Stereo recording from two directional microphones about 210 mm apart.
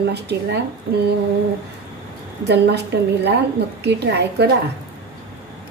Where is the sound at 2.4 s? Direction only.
50° right (ahead or behind).